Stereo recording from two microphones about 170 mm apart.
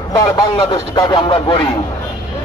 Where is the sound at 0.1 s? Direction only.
25° left (ahead or behind).